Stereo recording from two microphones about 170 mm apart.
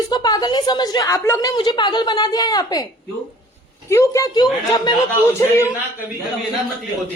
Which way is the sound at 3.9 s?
15° left (ahead or behind).